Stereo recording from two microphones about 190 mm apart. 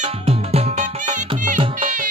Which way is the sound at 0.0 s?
30° right (ahead or behind).